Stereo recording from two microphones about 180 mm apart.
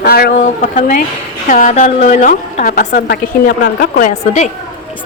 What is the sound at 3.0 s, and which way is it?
Speech, 60° left (ahead or behind).